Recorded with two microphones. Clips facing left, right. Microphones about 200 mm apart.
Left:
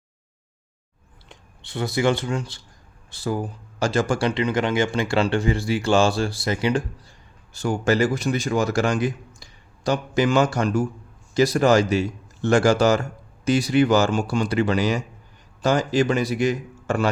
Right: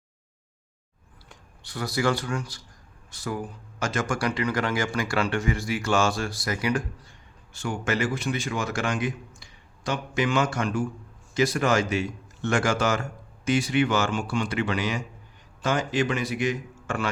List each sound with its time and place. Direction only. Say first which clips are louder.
1.3 s speech: left 5 dB; 25° left (ahead or behind)